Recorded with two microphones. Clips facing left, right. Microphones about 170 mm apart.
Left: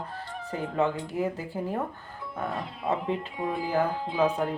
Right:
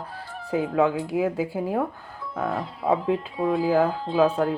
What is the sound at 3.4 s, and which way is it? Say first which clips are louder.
Speech: right 6 dB; 90° right.